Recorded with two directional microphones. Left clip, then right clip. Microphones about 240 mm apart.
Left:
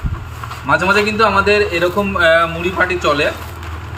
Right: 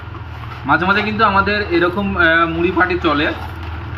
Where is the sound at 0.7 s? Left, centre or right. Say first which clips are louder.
Left 2 dB; left.